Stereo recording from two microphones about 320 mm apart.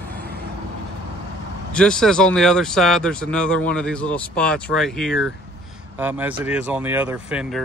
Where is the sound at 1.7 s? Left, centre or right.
Centre.